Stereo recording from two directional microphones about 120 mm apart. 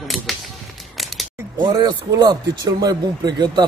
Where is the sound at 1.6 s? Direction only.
35° right (ahead or behind).